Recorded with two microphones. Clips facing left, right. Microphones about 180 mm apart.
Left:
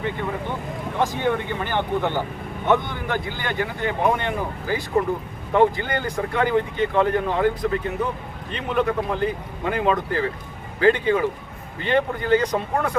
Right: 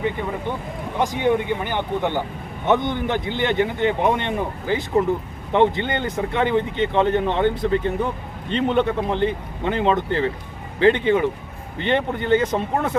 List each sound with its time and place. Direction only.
0.9 s a man's voice: 15° right (ahead or behind)